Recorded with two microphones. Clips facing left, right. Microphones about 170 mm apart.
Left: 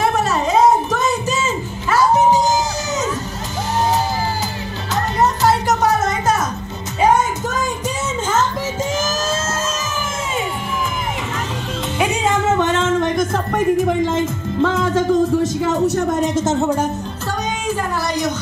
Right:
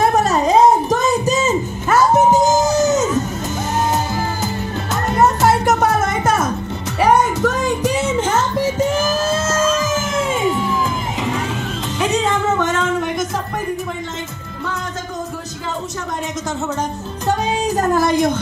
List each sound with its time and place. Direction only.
0.0 s music: 40° right (ahead or behind)
4.9 s music: 50° right (ahead or behind)
7.0 s music: 65° right (ahead or behind)
9.5 s fire engine: 90° right
12.4 s music: 25° left (ahead or behind)
13.8 s music: 90° left
17.7 s a sound: 50° right (ahead or behind)